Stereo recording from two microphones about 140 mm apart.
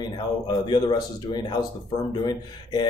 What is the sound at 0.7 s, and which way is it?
Speech, 30° left (ahead or behind).